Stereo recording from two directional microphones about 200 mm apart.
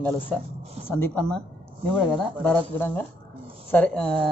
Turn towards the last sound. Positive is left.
turn(degrees=5)  # may be behind; listen again after turning